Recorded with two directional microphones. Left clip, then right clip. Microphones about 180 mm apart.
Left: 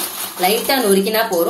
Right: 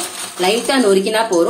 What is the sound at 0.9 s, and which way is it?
Speech, 30° right (ahead or behind).